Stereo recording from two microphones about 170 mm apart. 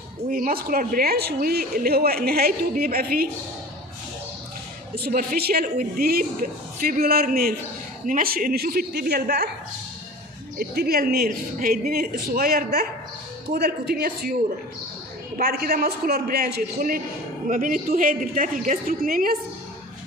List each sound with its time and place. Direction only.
0.3 s a woman's voice: 60° right (ahead or behind)
4.9 s a woman's voice: 65° right (ahead or behind)
10.6 s a woman's voice: 65° right (ahead or behind)
15.3 s a woman's voice: 60° right (ahead or behind)
17.5 s a woman's voice: 55° right (ahead or behind)